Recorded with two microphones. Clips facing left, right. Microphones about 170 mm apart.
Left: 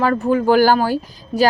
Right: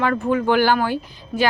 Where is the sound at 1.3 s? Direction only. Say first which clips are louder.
Left 5 dB; 25° left (ahead or behind).